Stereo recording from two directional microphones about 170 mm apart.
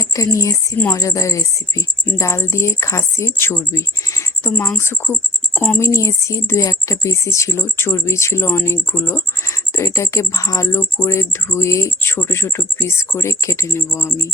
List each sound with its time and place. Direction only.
0.0 s speech: 20° left (ahead or behind)